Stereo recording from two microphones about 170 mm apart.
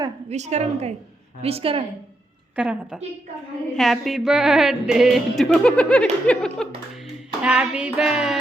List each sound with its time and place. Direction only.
0.3 s a woman's voice: 40° right (ahead or behind)
2.6 s music: 5° right (ahead or behind)
7.4 s music: 5° right (ahead or behind)